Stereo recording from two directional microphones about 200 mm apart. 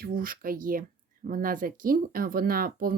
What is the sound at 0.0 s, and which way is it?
Speech, 45° right (ahead or behind).